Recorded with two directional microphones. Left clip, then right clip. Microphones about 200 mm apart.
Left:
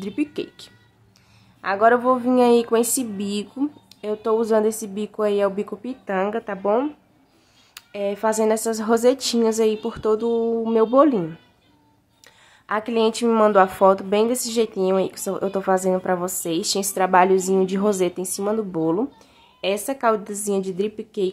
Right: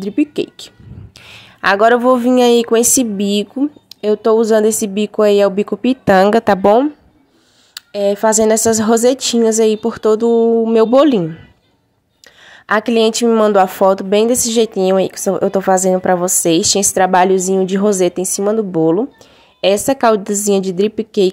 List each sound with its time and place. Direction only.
0.0 s speech: 20° right (ahead or behind)
1.2 s speech: 45° right (ahead or behind)
6.3 s speech: 50° right (ahead or behind)
7.7 s speech: 25° right (ahead or behind)
12.4 s speech: 30° right (ahead or behind)